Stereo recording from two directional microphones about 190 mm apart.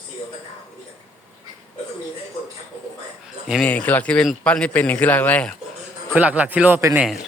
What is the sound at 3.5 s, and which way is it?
A man's voice, 5° left (ahead or behind).